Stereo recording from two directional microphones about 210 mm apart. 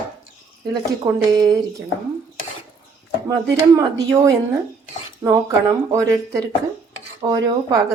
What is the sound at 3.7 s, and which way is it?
A woman's voice, 15° right (ahead or behind).